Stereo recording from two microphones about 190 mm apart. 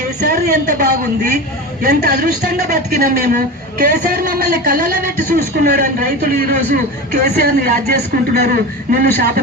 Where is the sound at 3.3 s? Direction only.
50° right (ahead or behind).